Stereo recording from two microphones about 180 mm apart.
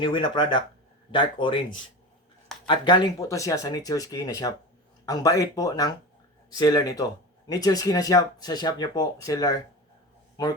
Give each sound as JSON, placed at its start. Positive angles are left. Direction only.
{"t": 0.0, "sound": "speech", "side_deg": 25}
{"t": 2.6, "sound": "speech", "side_deg": 25}